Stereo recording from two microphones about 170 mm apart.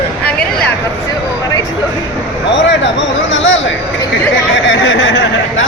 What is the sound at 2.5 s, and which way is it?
Speech, 90° left.